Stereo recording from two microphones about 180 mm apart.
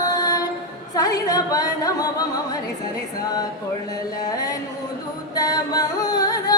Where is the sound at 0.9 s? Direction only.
20° left (ahead or behind).